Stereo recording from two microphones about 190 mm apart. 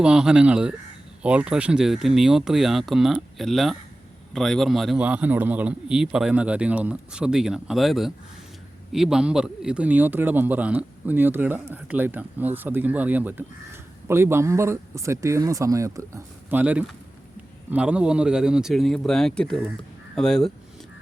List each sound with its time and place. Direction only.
0.0 s a man's voice: 5° right (ahead or behind)